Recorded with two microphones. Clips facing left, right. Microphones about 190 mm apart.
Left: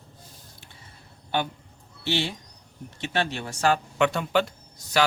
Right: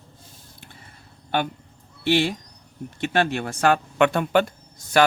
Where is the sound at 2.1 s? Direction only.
55° right (ahead or behind).